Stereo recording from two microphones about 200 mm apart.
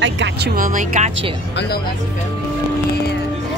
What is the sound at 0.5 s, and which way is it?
Speech, 40° right (ahead or behind).